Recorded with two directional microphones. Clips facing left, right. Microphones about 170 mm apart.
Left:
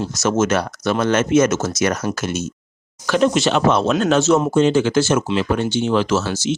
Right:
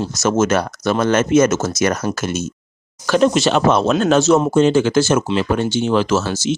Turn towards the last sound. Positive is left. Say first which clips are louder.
# right 1 dB
turn(degrees=-45)  # may be behind; listen again after turning